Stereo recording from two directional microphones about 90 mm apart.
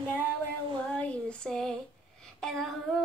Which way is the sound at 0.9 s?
10° left (ahead or behind).